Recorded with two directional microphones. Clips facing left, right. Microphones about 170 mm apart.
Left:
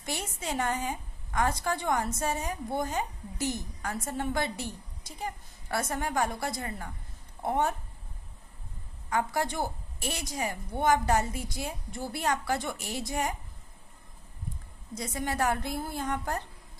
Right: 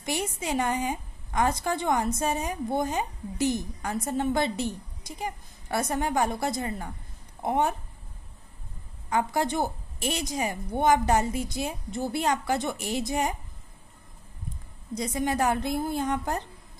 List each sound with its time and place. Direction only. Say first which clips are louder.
0.0 s a woman's voice: right 5 dB; 15° right (ahead or behind)
9.1 s a woman's voice: right 4 dB; 20° right (ahead or behind)
15.0 s a woman's voice: right 4 dB; 20° right (ahead or behind)